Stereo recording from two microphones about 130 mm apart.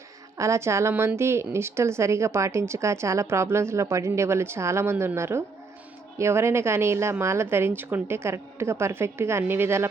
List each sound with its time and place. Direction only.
0.3 s a woman's voice: 25° right (ahead or behind)